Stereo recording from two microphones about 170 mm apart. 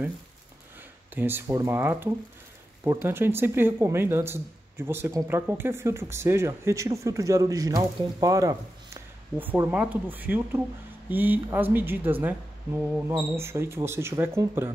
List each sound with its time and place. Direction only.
1.1 s speech: 10° right (ahead or behind)